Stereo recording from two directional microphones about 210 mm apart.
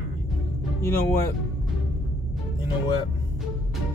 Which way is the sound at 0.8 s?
10° left (ahead or behind).